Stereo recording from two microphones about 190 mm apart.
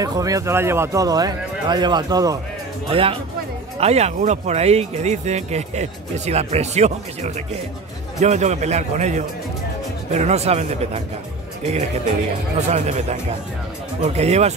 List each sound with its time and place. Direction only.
0.0 s a man's voice: 20° right (ahead or behind); by 11.0 s 35° right (ahead or behind)
12.5 s speech: 35° right (ahead or behind)